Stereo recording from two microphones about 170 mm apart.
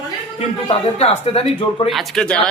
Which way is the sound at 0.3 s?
35° left (ahead or behind).